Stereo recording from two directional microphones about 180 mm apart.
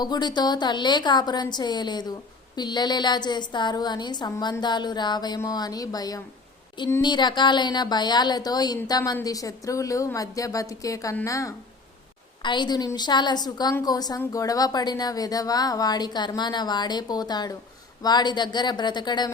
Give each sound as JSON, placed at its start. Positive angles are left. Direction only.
{"t": 0.0, "sound": "a woman's voice", "side_deg": 25}